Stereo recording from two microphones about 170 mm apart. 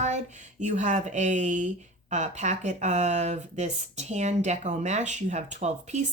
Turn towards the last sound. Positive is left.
turn(degrees=-45)  # may be behind; listen again after turning